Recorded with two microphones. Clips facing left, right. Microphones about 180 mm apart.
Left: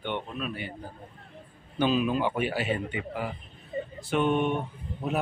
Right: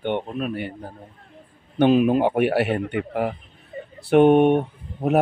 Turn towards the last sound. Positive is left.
turn(degrees=-65)  # may be behind; listen again after turning